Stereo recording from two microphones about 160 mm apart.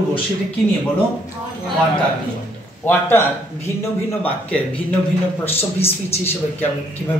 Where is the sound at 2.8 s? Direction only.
15° left (ahead or behind).